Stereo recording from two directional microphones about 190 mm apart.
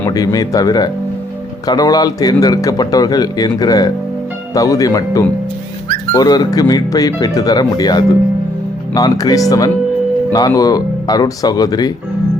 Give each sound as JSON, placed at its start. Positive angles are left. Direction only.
{"t": 0.0, "sound": "speech", "side_deg": 20}